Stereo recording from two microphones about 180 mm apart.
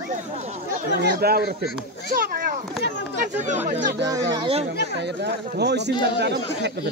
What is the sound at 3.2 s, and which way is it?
Speech, 45° right (ahead or behind).